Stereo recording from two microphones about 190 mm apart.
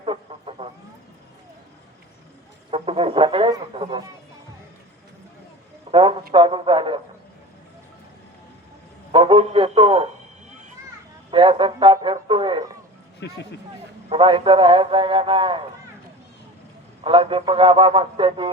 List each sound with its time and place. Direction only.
0.0 s chicken: 30° right (ahead or behind)
2.6 s a man's voice: 30° right (ahead or behind)
5.9 s a man's voice: 25° right (ahead or behind)
9.1 s a man's voice: 25° right (ahead or behind)
11.3 s a man's voice: 30° right (ahead or behind)
13.2 s speech: 65° left (ahead or behind)
14.1 s a man's voice: 25° right (ahead or behind)
17.0 s a man's voice: 30° right (ahead or behind)